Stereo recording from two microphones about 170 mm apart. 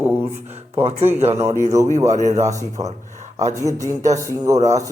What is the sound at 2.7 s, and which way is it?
Speech, 45° right (ahead or behind).